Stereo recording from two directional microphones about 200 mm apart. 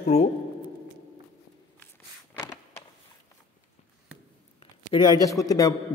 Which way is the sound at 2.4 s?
15° left (ahead or behind).